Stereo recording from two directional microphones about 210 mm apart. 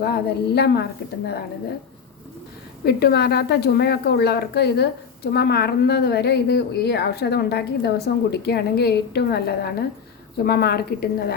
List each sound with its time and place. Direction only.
0.0 s a woman's voice: 50° left (ahead or behind)
2.8 s a woman's voice: 50° left (ahead or behind)